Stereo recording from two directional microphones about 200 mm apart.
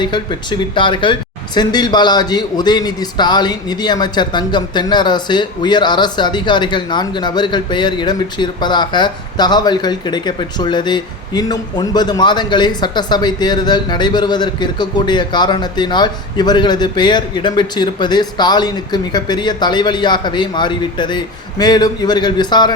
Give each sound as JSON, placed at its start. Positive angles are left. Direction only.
{"t": 0.0, "sound": "a man's voice", "side_deg": 20}